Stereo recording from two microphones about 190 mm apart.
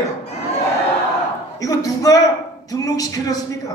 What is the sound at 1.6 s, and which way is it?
A man's voice, 20° left (ahead or behind).